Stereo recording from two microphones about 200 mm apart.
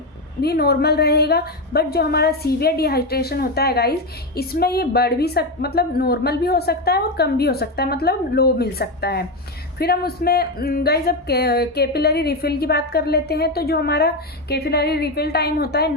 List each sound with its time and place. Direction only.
0.4 s speech: 50° left (ahead or behind)